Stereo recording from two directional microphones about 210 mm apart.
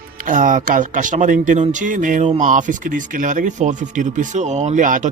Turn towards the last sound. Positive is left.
turn(degrees=-40)  # may be behind; listen again after turning